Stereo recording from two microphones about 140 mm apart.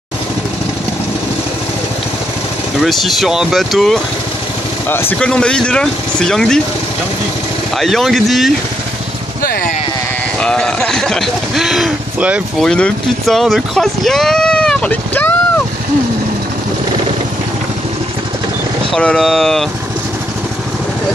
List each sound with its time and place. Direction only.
2.8 s speech: centre (ahead or behind)
5.2 s speech: 5° left (ahead or behind)
7.7 s speech: centre (ahead or behind)
9.4 s vehicle: 90° left
10.4 s speech: 5° left (ahead or behind)
12.6 s speech: 5° left (ahead or behind)
18.9 s speech: 5° left (ahead or behind)